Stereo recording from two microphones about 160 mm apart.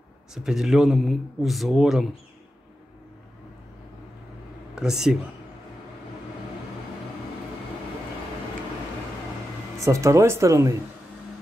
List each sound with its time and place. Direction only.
0.3 s a man's voice: 5° right (ahead or behind)
4.7 s a man's voice: 5° right (ahead or behind)
9.8 s speech: 20° right (ahead or behind)